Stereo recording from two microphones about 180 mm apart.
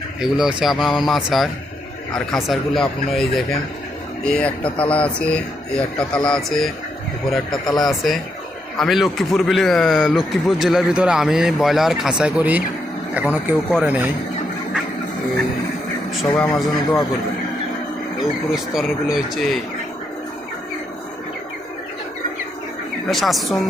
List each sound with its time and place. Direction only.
0.2 s a man's voice: centre (ahead or behind)
4.6 s speech: 30° left (ahead or behind)
4.9 s a man's voice: 5° left (ahead or behind); by 14.1 s 10° right (ahead or behind)
16.3 s a man's voice: 15° left (ahead or behind)
18.2 s a man's voice: centre (ahead or behind)
23.0 s a man's voice: centre (ahead or behind)